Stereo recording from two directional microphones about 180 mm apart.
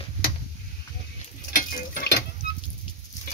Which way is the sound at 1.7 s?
65° left (ahead or behind).